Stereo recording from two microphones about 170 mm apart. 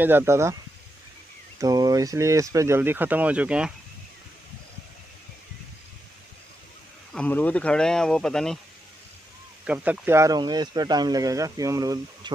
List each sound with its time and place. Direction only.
0.0 s speech: 15° right (ahead or behind)
1.6 s speech: 20° right (ahead or behind)
7.2 s speech: 10° left (ahead or behind)
9.7 s speech: 10° right (ahead or behind)